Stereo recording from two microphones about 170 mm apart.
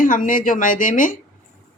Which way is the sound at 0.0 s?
50° left (ahead or behind).